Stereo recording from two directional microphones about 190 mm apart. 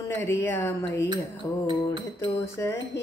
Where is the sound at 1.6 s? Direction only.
25° right (ahead or behind).